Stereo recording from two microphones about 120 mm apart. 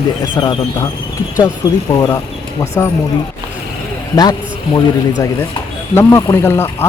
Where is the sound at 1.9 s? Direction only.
25° left (ahead or behind).